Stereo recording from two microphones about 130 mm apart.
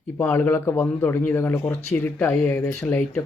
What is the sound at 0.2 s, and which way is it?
Speech, 15° left (ahead or behind).